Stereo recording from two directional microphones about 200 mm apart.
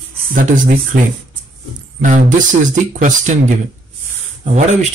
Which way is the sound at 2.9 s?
40° right (ahead or behind).